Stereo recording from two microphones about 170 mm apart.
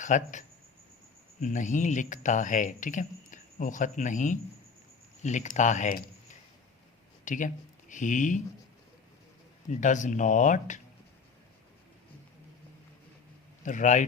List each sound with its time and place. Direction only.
0.0 s speech: 45° left (ahead or behind)
7.3 s speech: 50° left (ahead or behind)
9.6 s speech: 45° left (ahead or behind)
13.6 s speech: 45° left (ahead or behind)